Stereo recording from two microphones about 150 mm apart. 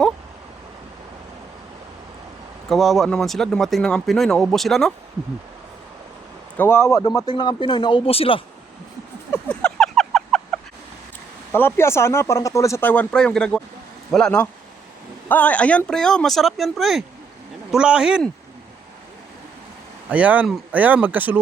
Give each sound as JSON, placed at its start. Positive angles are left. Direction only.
{"t": 2.6, "sound": "speech", "side_deg": 0}
{"t": 6.6, "sound": "speech", "side_deg": 15}
{"t": 7.2, "sound": "speech", "side_deg": 30}
{"t": 9.3, "sound": "a sound", "side_deg": 10}
{"t": 11.5, "sound": "speech", "side_deg": 15}
{"t": 20.1, "sound": "speech", "side_deg": -10}